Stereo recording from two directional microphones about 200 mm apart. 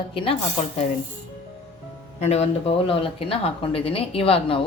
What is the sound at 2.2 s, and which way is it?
Speech, 35° left (ahead or behind).